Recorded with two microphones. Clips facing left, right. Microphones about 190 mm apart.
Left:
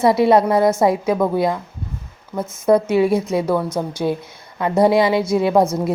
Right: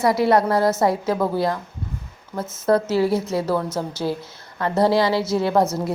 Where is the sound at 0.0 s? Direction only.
20° left (ahead or behind).